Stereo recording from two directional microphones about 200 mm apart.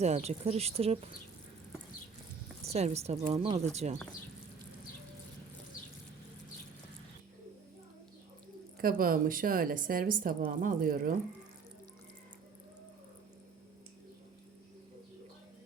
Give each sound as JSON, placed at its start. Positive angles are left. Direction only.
{"t": 0.0, "sound": "speech", "side_deg": -35}
{"t": 2.7, "sound": "speech", "side_deg": -30}
{"t": 8.8, "sound": "speech", "side_deg": -45}